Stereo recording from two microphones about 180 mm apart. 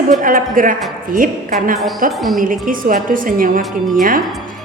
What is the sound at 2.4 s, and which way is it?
A woman's voice, 50° right (ahead or behind).